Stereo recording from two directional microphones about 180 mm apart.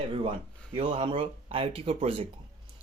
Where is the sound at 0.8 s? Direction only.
30° right (ahead or behind).